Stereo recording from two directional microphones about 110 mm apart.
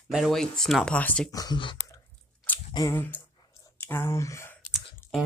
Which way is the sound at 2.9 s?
15° left (ahead or behind).